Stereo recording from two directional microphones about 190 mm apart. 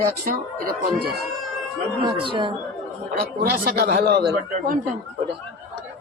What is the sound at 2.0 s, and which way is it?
Speech, 25° right (ahead or behind).